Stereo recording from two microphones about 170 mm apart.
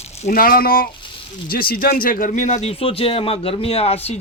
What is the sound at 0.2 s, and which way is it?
A man's voice, 55° left (ahead or behind).